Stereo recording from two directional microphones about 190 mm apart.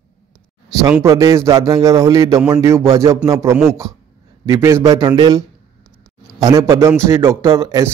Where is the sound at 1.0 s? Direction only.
15° right (ahead or behind).